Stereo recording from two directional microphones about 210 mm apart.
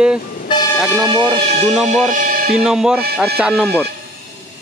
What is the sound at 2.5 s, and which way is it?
Speech, 5° right (ahead or behind).